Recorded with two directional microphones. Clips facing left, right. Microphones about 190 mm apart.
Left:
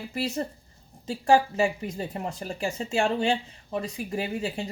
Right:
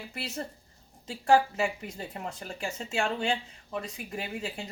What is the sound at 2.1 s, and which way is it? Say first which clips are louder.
A woman's voice: left 5 dB; 35° left (ahead or behind).